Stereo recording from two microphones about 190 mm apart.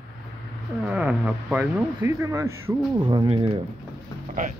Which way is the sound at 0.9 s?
5° right (ahead or behind).